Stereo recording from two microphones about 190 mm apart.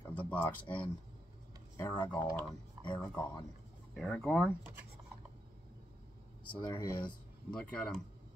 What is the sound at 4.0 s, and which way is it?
Speech, 5° left (ahead or behind).